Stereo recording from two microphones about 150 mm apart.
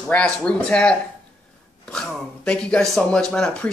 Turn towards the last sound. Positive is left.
turn(degrees=5)  # may be behind; listen again after turning